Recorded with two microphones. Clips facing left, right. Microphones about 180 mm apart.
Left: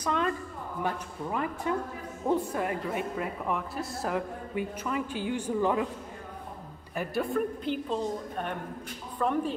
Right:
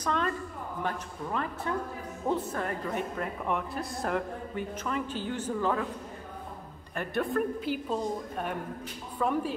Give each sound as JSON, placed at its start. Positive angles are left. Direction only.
{"t": 0.0, "sound": "a sound", "side_deg": 10}
{"t": 1.3, "sound": "speech", "side_deg": 15}
{"t": 7.0, "sound": "a woman's voice", "side_deg": 0}